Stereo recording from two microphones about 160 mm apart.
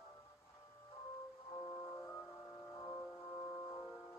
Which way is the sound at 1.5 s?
30° left (ahead or behind).